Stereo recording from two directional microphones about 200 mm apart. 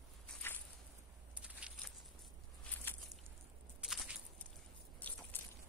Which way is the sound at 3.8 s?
Centre (ahead or behind).